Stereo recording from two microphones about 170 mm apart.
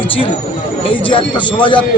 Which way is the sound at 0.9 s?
30° left (ahead or behind).